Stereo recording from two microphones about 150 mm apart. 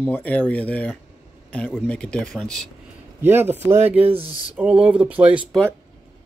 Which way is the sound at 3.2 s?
15° right (ahead or behind).